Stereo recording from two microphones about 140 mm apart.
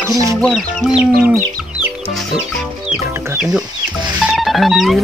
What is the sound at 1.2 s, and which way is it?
Chicken, 15° right (ahead or behind).